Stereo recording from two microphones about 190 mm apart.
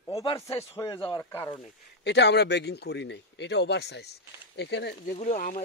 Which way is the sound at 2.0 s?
65° left (ahead or behind).